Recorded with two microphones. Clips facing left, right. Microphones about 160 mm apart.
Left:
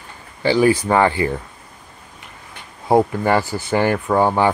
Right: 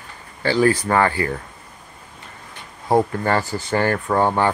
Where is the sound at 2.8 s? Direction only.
15° left (ahead or behind).